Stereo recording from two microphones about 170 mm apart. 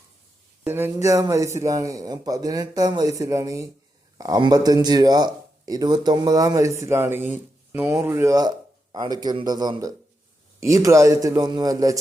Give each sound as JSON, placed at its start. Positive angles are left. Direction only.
{"t": 0.6, "sound": "speech", "side_deg": -10}